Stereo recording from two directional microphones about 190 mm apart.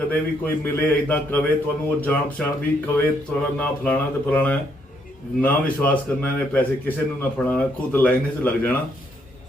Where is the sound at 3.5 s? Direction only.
5° left (ahead or behind).